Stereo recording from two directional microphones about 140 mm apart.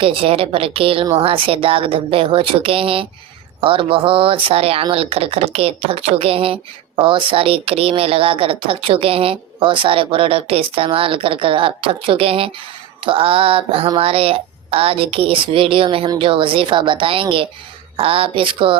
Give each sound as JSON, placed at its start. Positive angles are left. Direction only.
{"t": 0.0, "sound": "speech", "side_deg": -40}